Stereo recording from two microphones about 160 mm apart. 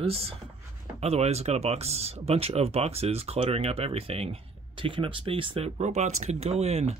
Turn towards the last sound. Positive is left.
turn(degrees=-40)  # may be behind; listen again after turning